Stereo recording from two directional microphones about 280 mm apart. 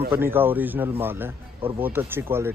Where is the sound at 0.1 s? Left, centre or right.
Centre.